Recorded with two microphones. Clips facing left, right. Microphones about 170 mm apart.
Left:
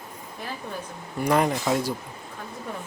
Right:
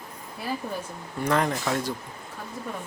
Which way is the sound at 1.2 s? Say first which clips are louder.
Left 2 dB; 10° left (ahead or behind).